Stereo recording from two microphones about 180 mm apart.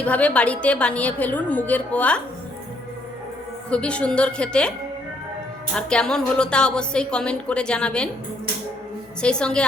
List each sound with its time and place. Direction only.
0.0 s a woman's voice: 10° left (ahead or behind)
3.7 s a woman's voice: 5° left (ahead or behind)
5.7 s a woman's voice: 5° left (ahead or behind)
9.2 s a woman's voice: 5° left (ahead or behind)